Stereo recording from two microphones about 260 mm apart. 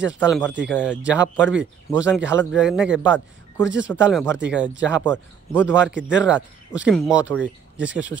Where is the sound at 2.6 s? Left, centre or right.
Centre.